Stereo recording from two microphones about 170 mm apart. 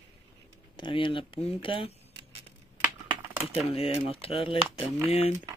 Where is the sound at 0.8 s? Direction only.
30° left (ahead or behind).